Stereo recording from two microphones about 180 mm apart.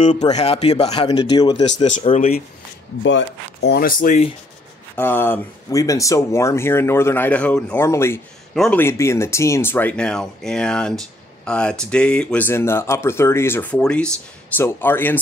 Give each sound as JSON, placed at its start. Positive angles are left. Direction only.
{"t": 0.3, "sound": "speech", "side_deg": 35}
{"t": 1.9, "sound": "speech", "side_deg": 40}
{"t": 3.0, "sound": "speech", "side_deg": 85}
{"t": 4.9, "sound": "speech", "side_deg": 10}